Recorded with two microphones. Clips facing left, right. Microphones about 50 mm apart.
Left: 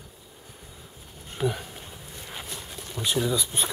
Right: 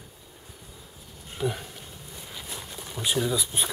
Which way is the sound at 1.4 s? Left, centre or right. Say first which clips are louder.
Left 2 dB; left.